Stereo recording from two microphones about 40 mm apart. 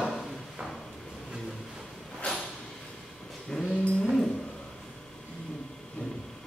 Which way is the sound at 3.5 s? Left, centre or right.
Centre.